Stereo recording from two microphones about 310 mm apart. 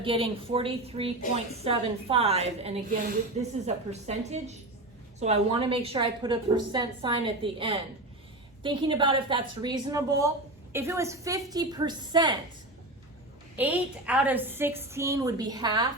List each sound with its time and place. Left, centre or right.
0.0 s a woman's voice: centre
13.6 s a woman's voice: centre